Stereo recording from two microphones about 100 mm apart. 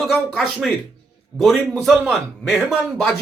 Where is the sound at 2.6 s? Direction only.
20° right (ahead or behind).